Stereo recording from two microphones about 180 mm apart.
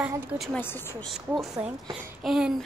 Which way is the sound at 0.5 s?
10° left (ahead or behind).